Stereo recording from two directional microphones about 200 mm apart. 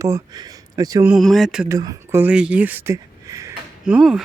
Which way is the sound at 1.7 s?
15° right (ahead or behind).